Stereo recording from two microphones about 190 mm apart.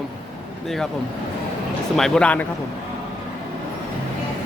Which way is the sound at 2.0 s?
5° left (ahead or behind).